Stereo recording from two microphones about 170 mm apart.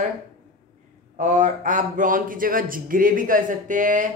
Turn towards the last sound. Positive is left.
turn(degrees=-50)  # may be behind; listen again after turning